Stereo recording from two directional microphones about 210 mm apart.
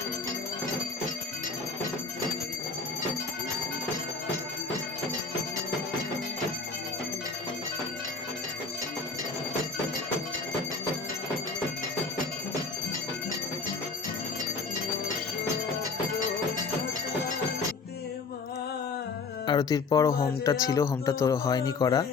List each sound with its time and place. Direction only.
19.5 s speech: 20° left (ahead or behind)